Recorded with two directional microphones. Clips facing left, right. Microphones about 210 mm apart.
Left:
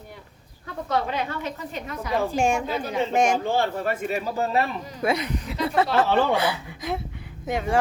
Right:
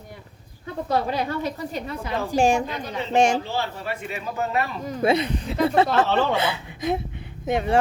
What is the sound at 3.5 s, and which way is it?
Speech, 50° left (ahead or behind).